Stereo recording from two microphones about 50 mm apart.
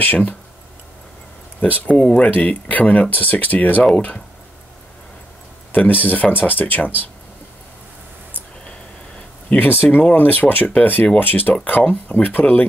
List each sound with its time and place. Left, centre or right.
0.0 s speech: left
1.8 s speech: left
5.9 s speech: left
9.5 s speech: left